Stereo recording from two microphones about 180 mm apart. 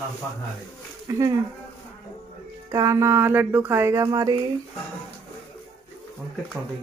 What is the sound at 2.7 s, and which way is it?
Speech, 15° right (ahead or behind).